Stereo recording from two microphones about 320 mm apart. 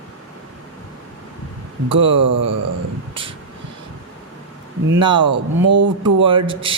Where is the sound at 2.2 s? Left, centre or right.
Right.